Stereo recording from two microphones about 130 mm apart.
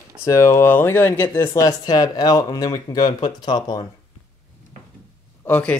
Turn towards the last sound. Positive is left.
turn(degrees=15)  # may be behind; listen again after turning